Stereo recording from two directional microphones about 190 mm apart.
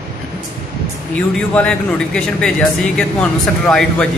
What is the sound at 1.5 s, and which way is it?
Speech, 5° left (ahead or behind).